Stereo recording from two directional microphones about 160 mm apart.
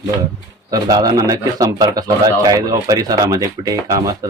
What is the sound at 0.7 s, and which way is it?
Speech, 25° right (ahead or behind).